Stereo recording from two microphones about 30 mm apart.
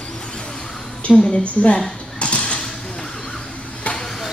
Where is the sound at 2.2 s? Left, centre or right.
Left.